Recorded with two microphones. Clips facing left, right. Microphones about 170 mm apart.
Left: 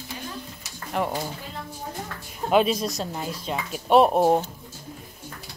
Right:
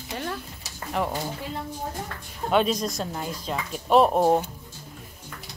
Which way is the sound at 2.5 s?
5° left (ahead or behind).